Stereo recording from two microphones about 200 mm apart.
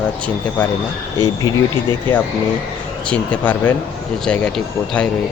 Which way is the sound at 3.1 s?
5° left (ahead or behind).